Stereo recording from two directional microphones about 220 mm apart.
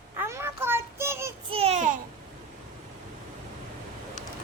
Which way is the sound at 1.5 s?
25° right (ahead or behind).